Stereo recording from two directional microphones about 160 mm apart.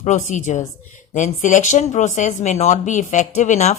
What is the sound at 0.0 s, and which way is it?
Speech, 50° left (ahead or behind).